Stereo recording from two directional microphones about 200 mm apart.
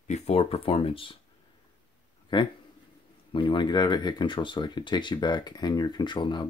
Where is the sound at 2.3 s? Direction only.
25° left (ahead or behind).